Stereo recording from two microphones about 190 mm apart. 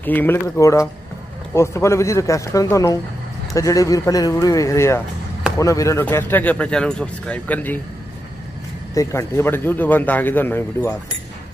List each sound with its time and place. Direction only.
0.0 s speech: 10° left (ahead or behind)
8.9 s speech: 15° left (ahead or behind)